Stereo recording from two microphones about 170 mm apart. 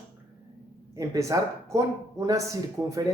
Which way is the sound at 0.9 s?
20° right (ahead or behind).